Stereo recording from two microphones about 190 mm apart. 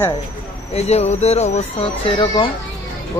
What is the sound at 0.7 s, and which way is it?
Speech, 35° left (ahead or behind).